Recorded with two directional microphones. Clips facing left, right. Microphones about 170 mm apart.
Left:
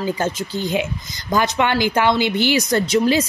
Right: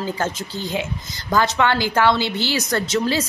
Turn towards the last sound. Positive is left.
turn(degrees=15)  # may be behind; listen again after turning